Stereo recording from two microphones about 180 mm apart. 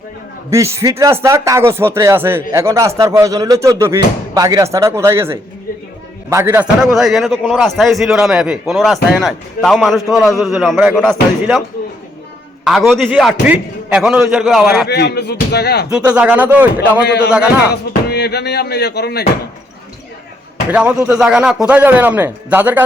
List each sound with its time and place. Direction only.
0.5 s speech: 15° right (ahead or behind)
6.8 s a man's voice: centre (ahead or behind)
12.6 s a man's voice: centre (ahead or behind)
14.8 s speech: 65° left (ahead or behind)
15.9 s speech: 5° right (ahead or behind)
17.0 s speech: 65° left (ahead or behind)
17.2 s a man's voice: 5° right (ahead or behind)
18.1 s speech: 65° left (ahead or behind)
20.7 s speech: 10° right (ahead or behind)